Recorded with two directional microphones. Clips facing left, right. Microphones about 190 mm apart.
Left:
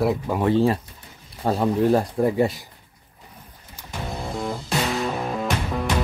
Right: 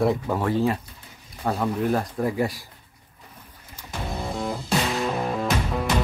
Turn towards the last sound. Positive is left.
turn(degrees=0)  # may be behind; listen again after turning